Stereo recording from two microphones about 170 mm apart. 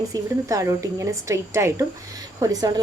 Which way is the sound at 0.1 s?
20° right (ahead or behind).